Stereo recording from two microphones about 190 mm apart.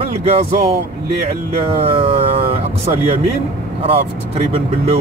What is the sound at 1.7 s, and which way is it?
Speech, 30° right (ahead or behind).